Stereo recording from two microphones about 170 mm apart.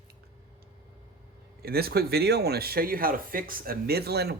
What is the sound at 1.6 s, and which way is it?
Speech, 65° right (ahead or behind).